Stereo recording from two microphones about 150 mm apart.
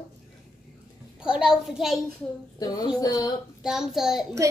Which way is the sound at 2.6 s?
25° left (ahead or behind).